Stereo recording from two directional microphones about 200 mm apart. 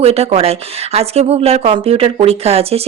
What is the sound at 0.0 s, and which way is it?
Speech, 30° right (ahead or behind).